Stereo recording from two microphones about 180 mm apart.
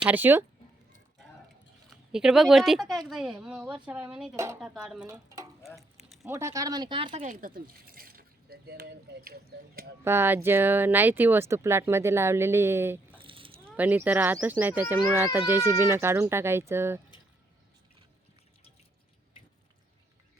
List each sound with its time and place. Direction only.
0.0 s speech: 10° right (ahead or behind)
1.9 s speech: centre (ahead or behind)
5.0 s speech: 15° right (ahead or behind)
5.6 s a sound: centre (ahead or behind)
6.2 s speech: 15° right (ahead or behind)
7.2 s speech: 50° right (ahead or behind)
10.0 s speech: 15° right (ahead or behind)
13.1 s a sound: 30° right (ahead or behind)
13.7 s speech: 10° right (ahead or behind)